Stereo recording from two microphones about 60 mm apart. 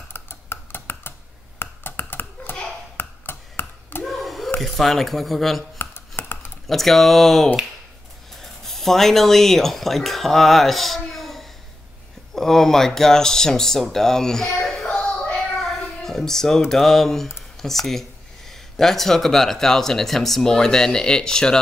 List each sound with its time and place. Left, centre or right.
0.1 s tick-tock: left
1.6 s finger snapping: left
4.0 s a sound: centre
4.7 s speech: centre
5.8 s dishes: left
6.7 s speech: centre
15.0 s child singing: centre
15.5 s a sound: centre
16.6 s speech: centre